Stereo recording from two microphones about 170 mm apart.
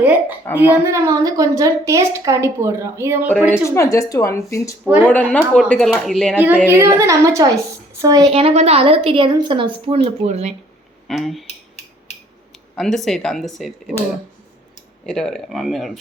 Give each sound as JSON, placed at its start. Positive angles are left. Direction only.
{"t": 0.0, "sound": "a sound", "side_deg": -10}
{"t": 0.5, "sound": "a woman's voice", "side_deg": -15}
{"t": 3.5, "sound": "speech", "side_deg": 15}
{"t": 6.3, "sound": "a woman's voice", "side_deg": -10}
{"t": 11.1, "sound": "speech", "side_deg": 0}
{"t": 12.7, "sound": "speech", "side_deg": 0}
{"t": 15.0, "sound": "speech", "side_deg": 5}